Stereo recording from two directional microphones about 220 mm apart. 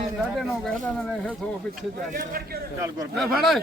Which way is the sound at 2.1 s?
40° right (ahead or behind).